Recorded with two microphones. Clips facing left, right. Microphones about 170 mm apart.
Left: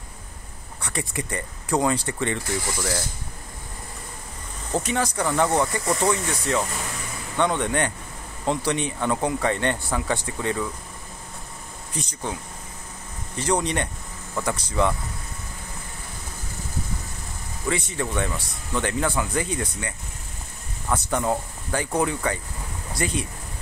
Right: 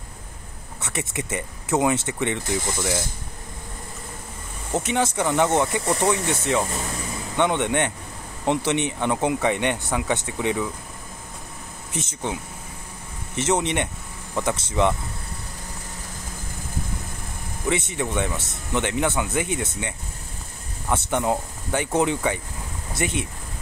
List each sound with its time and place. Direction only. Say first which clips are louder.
0.8 s speech: even; 20° right (ahead or behind)
4.7 s speech: right 2 dB; 20° right (ahead or behind)
11.9 s speech: right 2 dB; 25° right (ahead or behind)
13.4 s speech: right 1 dB; 20° right (ahead or behind)
17.6 s speech: right 2 dB; 20° right (ahead or behind)
20.9 s speech: right 1 dB; 25° right (ahead or behind)